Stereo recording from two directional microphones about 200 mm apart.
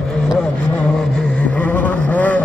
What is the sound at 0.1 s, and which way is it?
Vehicle, 5° left (ahead or behind).